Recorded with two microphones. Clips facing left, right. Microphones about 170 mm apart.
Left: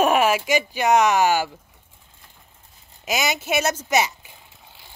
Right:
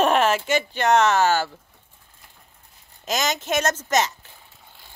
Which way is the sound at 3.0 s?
10° left (ahead or behind).